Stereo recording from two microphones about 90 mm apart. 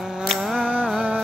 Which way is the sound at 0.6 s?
15° right (ahead or behind).